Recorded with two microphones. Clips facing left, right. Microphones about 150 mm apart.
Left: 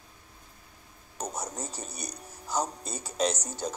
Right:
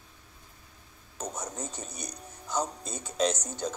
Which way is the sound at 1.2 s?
35° left (ahead or behind).